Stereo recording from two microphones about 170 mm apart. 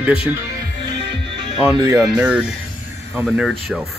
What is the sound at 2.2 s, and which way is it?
Speech, 5° right (ahead or behind).